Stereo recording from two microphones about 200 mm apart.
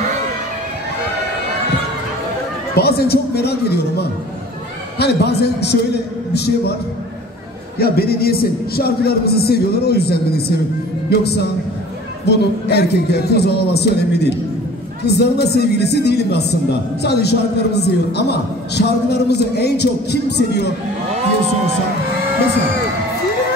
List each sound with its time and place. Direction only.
2.7 s a man's voice: 55° left (ahead or behind)
7.8 s a man's voice: 50° left (ahead or behind)
12.3 s a man's voice: 55° left (ahead or behind)